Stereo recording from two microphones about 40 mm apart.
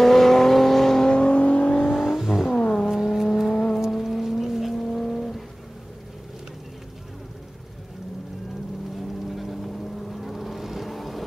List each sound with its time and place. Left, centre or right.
0.0 s vehicle: centre
1.0 s vehicle: left
2.0 s vehicle: centre
2.5 s vehicle: centre
2.9 s vehicle: centre
5.0 s music: centre
9.3 s vehicle: centre